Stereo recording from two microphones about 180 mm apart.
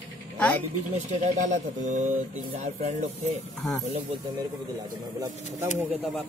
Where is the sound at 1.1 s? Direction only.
40° right (ahead or behind).